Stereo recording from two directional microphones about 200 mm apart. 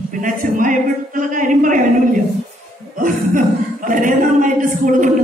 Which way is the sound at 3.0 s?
40° right (ahead or behind).